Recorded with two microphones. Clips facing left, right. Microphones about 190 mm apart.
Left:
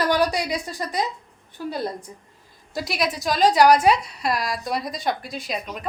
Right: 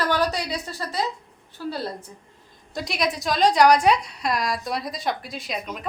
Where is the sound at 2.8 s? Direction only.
Centre (ahead or behind).